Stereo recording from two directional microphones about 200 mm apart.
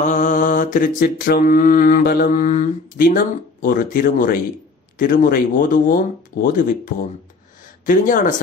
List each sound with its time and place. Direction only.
0.0 s mantra: 40° left (ahead or behind)
7.8 s speech: 40° left (ahead or behind)